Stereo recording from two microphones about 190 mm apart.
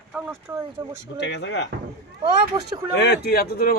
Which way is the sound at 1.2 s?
65° left (ahead or behind).